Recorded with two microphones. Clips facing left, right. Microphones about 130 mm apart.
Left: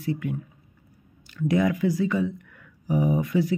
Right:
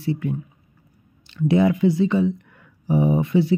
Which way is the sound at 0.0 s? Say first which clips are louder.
Right 3 dB; 30° right (ahead or behind).